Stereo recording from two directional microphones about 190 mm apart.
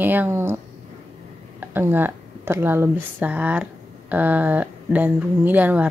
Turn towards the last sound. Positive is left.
turn(degrees=-10)  # may be behind; listen again after turning